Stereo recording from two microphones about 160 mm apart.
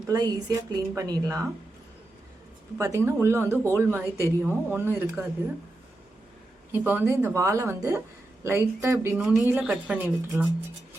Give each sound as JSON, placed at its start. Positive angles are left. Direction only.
{"t": 0.1, "sound": "a woman's voice", "side_deg": -25}
{"t": 2.7, "sound": "speech", "side_deg": -20}
{"t": 6.7, "sound": "speech", "side_deg": -10}